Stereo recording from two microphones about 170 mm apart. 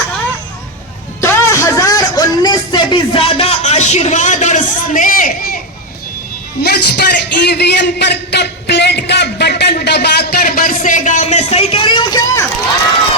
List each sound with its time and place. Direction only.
1.2 s music: 15° left (ahead or behind); by 5.5 s 55° left (ahead or behind)
6.6 s a man's voice: 70° left (ahead or behind); by 12.4 s 25° left (ahead or behind)